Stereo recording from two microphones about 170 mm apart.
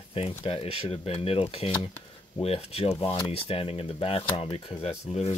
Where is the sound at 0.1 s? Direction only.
35° left (ahead or behind).